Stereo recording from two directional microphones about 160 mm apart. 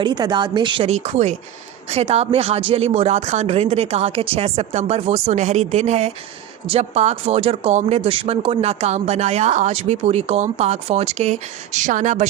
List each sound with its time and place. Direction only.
0.0 s speech: 30° right (ahead or behind); by 12.3 s 50° right (ahead or behind)